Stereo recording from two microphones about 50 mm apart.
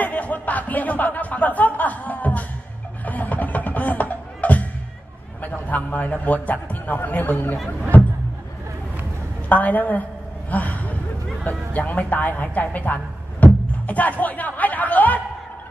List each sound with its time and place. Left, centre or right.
0.0 s speech: left
3.1 s music: left
5.4 s a man's voice: left
7.9 s a sound: left
9.5 s a man's voice: left